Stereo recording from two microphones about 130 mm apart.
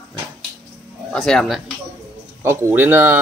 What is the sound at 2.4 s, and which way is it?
Speech, 20° right (ahead or behind).